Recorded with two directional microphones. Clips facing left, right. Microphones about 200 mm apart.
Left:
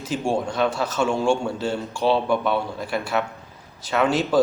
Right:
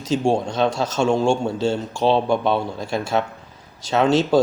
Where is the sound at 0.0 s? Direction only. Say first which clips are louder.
Right 4 dB; 25° right (ahead or behind).